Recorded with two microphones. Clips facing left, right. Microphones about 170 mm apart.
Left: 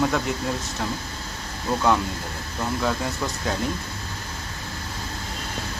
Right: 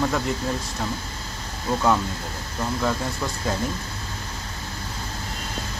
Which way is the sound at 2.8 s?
Centre (ahead or behind).